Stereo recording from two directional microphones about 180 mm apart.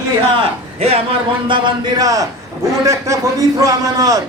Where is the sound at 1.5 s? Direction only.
25° right (ahead or behind).